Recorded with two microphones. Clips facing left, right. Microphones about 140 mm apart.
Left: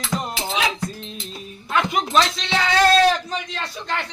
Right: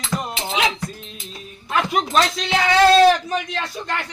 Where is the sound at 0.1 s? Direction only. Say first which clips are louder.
Even; 20° left (ahead or behind).